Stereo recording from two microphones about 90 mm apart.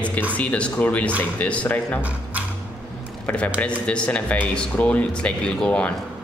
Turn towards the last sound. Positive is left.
turn(degrees=10)  # may be behind; listen again after turning